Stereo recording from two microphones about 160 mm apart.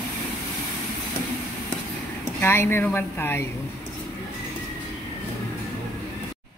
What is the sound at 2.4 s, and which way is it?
Speech, 15° left (ahead or behind).